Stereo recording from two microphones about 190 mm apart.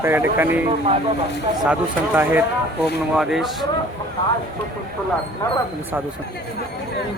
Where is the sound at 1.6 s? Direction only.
10° right (ahead or behind).